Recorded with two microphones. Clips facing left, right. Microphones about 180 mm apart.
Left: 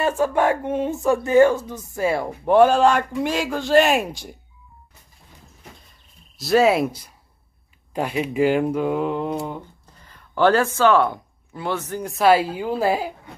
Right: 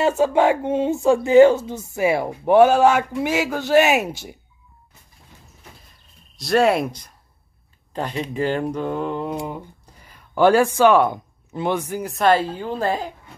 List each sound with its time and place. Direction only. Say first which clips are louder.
0.2 s speech: right 2 dB; 25° right (ahead or behind)
2.0 s a man's voice: right 2 dB; 10° right (ahead or behind)
6.3 s speech: left 1 dB; centre (ahead or behind)
9.9 s speech: right 2 dB; 10° right (ahead or behind)
12.0 s speech: left 2 dB; centre (ahead or behind)